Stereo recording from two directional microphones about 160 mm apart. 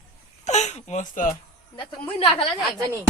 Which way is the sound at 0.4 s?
45° left (ahead or behind).